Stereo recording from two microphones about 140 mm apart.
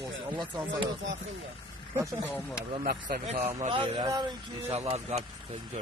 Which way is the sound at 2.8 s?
90° right.